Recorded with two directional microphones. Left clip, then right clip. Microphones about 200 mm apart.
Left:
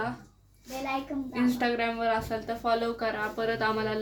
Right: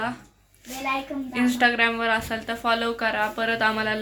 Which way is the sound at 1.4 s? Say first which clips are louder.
Right 8 dB; centre (ahead or behind).